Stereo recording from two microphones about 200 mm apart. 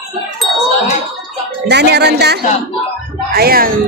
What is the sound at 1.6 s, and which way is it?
A woman's voice, 55° right (ahead or behind).